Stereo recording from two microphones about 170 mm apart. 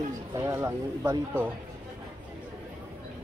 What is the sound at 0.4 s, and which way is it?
A man's voice, 15° right (ahead or behind).